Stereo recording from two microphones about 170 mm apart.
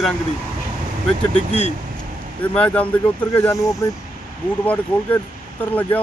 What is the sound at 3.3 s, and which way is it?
Speech, 20° left (ahead or behind).